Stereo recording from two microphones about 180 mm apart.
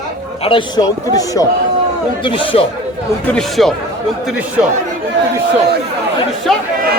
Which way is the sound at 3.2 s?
5° left (ahead or behind).